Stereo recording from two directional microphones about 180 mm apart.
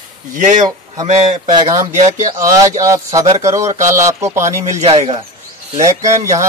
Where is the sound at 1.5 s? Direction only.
25° right (ahead or behind).